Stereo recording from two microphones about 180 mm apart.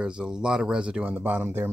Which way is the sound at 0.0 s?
5° right (ahead or behind).